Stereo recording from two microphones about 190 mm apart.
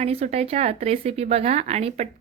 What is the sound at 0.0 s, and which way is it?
Speech, 35° right (ahead or behind).